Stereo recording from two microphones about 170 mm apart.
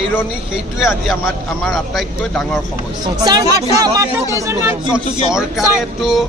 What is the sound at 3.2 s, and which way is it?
Speech, 20° right (ahead or behind).